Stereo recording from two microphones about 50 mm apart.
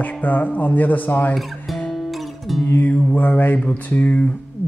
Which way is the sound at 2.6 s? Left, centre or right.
Left.